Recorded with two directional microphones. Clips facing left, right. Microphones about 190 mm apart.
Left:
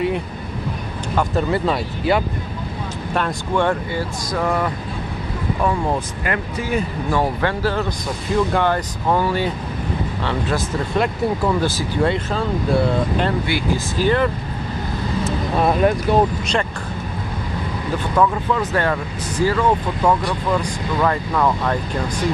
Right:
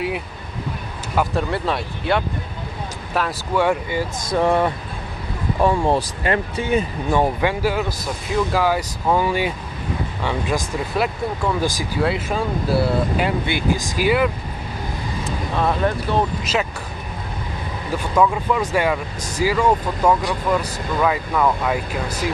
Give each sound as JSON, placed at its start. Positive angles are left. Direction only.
{"t": 1.1, "sound": "speech", "side_deg": 0}
{"t": 4.3, "sound": "speech", "side_deg": -25}
{"t": 13.5, "sound": "speech", "side_deg": -15}
{"t": 15.5, "sound": "speech", "side_deg": 15}
{"t": 18.1, "sound": "speech", "side_deg": -10}